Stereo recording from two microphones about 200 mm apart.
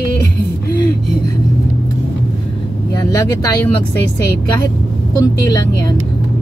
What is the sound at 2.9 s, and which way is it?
Speech, 20° left (ahead or behind).